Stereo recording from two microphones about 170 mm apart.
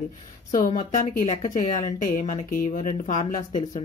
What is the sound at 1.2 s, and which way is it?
Speech, 30° left (ahead or behind).